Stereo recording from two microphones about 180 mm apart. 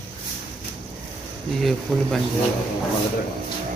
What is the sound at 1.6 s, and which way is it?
Speech, centre (ahead or behind).